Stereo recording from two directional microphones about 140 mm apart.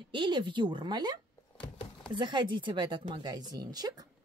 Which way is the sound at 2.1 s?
35° right (ahead or behind).